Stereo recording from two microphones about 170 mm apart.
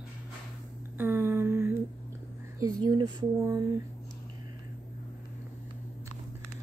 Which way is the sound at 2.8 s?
25° right (ahead or behind).